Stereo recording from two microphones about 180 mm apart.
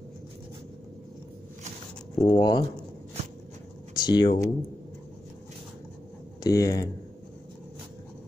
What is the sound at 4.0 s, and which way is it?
Speech, 25° left (ahead or behind).